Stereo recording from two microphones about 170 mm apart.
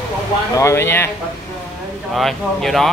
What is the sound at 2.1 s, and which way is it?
Speech, centre (ahead or behind).